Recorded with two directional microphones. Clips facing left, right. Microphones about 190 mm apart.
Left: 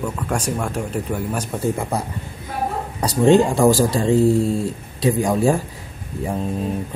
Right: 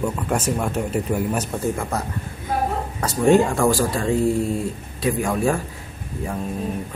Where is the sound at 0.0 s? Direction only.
5° right (ahead or behind).